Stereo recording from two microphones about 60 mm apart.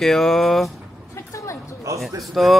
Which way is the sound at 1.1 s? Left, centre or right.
Left.